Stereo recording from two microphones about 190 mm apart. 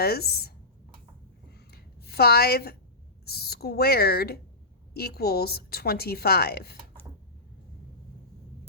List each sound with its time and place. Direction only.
0.0 s speech: 55° left (ahead or behind)
1.5 s a sound: 55° left (ahead or behind)
3.2 s speech: 55° left (ahead or behind)